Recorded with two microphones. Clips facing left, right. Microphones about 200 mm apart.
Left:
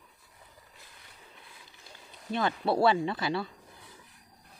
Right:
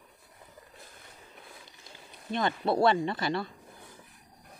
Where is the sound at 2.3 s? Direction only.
5° left (ahead or behind).